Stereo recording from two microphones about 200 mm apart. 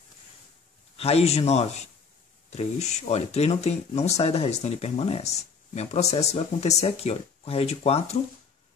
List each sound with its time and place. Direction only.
0.9 s speech: 30° left (ahead or behind)